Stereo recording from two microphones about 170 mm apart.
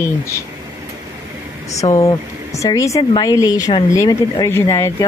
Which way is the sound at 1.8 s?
20° left (ahead or behind).